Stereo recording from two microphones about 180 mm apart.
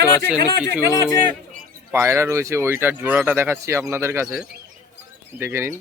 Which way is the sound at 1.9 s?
15° right (ahead or behind).